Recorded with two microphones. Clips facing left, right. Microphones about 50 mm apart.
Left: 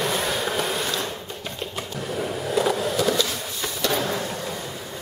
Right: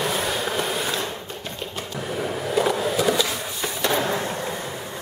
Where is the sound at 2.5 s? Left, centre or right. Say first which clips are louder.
Right 1 dB; centre.